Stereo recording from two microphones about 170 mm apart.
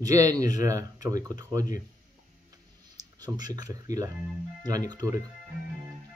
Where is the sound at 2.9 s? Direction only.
25° right (ahead or behind).